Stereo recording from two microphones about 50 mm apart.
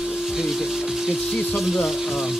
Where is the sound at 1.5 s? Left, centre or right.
Centre.